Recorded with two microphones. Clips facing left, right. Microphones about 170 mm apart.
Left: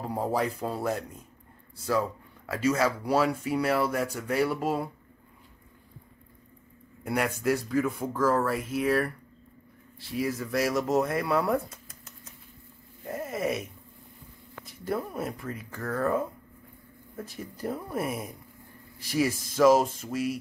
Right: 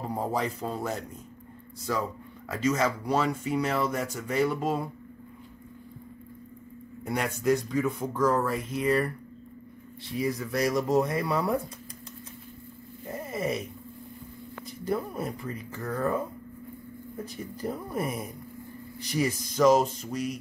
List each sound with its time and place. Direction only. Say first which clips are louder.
0.1 s speech: left 2 dB; 5° left (ahead or behind)
7.1 s speech: right 1 dB; 5° left (ahead or behind)
13.1 s a sound: left 1 dB; centre (ahead or behind)
14.7 s speech: right 1 dB; centre (ahead or behind)
17.2 s speech: even; 5° left (ahead or behind)